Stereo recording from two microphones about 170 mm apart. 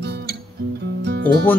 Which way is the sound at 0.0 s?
75° right (ahead or behind).